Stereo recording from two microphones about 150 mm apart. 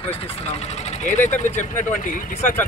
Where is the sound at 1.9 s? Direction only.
65° left (ahead or behind).